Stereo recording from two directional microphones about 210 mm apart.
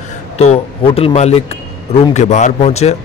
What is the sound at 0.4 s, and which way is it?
A man's voice, 30° left (ahead or behind).